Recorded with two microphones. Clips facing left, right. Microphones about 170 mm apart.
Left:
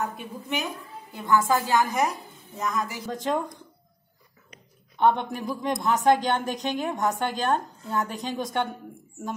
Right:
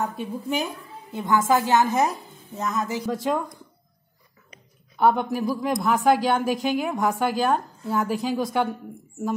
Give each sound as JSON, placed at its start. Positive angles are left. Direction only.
{"t": 0.0, "sound": "a woman's voice", "side_deg": -30}
{"t": 1.1, "sound": "a woman's voice", "side_deg": -20}
{"t": 3.0, "sound": "a woman's voice", "side_deg": -5}
{"t": 4.9, "sound": "a woman's voice", "side_deg": -5}